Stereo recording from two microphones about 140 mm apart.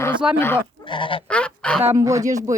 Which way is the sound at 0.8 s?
35° left (ahead or behind).